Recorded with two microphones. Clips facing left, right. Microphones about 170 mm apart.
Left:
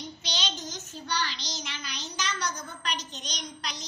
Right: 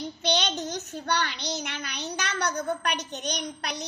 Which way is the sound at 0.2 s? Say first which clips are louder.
Right 11 dB; 60° right (ahead or behind).